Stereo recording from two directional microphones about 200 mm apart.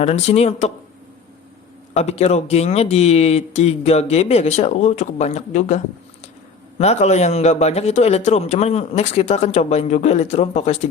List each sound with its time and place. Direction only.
0.0 s a man's voice: 30° left (ahead or behind)
1.9 s a man's voice: 35° left (ahead or behind)